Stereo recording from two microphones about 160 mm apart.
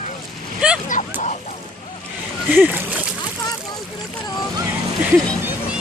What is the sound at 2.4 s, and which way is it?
Speech, 10° right (ahead or behind).